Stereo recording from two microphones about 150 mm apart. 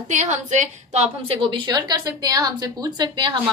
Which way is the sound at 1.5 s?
30° right (ahead or behind).